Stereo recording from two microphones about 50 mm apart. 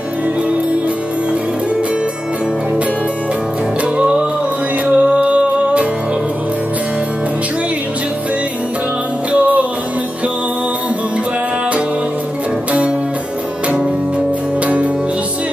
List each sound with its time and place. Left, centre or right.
4.0 s music: right
9.3 s music: right